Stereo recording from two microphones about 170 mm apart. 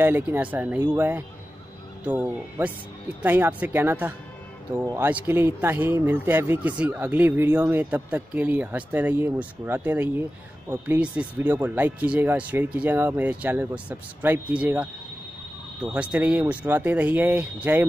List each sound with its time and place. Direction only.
0.0 s speech: 10° right (ahead or behind)